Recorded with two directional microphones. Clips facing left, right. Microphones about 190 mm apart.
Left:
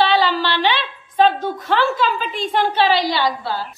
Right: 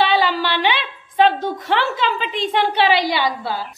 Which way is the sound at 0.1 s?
15° right (ahead or behind).